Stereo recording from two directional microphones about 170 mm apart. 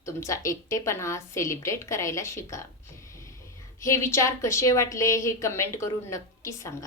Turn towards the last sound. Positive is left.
turn(degrees=20)  # may be behind; listen again after turning